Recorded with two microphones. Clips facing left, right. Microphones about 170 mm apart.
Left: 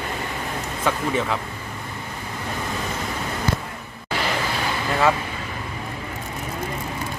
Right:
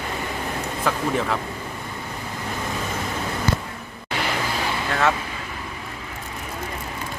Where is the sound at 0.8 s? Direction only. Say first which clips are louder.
Even; centre (ahead or behind).